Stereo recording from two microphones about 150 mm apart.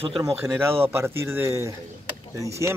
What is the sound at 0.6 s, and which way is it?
A man's voice, 15° right (ahead or behind).